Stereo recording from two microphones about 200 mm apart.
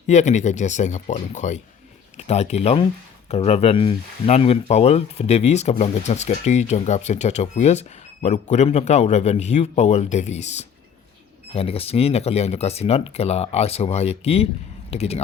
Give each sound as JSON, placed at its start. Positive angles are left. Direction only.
{"t": 0.1, "sound": "speech", "side_deg": 35}